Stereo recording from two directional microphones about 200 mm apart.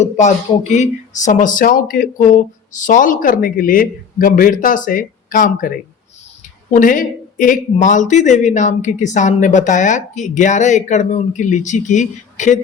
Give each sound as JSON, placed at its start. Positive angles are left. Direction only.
{"t": 0.0, "sound": "a man's voice", "side_deg": 35}